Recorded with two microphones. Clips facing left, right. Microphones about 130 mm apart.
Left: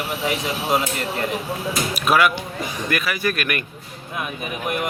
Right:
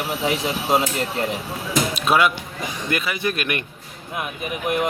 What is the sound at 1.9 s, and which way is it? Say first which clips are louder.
Speech: left 2 dB; 25° right (ahead or behind).